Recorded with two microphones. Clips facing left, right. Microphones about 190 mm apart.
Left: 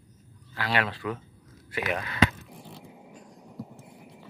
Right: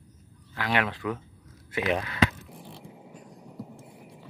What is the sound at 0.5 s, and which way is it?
Speech, 15° right (ahead or behind).